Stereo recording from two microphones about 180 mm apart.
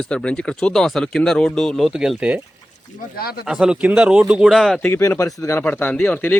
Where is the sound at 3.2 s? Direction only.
60° left (ahead or behind).